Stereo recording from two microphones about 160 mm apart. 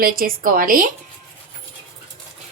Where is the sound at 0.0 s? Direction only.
65° right (ahead or behind).